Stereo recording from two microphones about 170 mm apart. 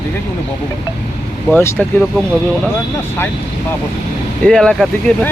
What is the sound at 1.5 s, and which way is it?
Speech, 15° left (ahead or behind).